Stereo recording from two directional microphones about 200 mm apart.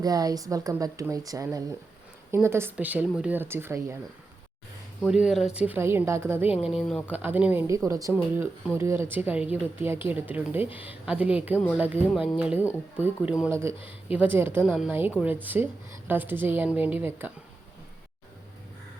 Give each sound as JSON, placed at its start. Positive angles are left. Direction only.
{"t": 0.0, "sound": "speech", "side_deg": -20}
{"t": 5.0, "sound": "speech", "side_deg": 0}
{"t": 6.7, "sound": "speech", "side_deg": 0}